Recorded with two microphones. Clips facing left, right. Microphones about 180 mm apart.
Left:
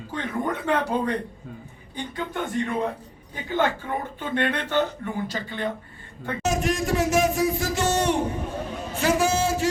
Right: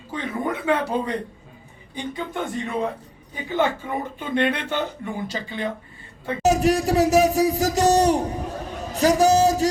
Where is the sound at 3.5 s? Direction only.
10° right (ahead or behind).